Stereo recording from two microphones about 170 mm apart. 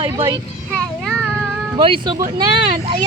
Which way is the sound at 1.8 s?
30° right (ahead or behind).